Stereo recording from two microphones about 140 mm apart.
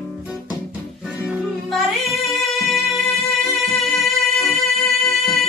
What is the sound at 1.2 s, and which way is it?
Music, centre (ahead or behind).